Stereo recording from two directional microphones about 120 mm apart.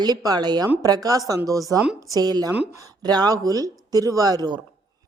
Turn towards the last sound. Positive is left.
turn(degrees=-35)  # may be behind; listen again after turning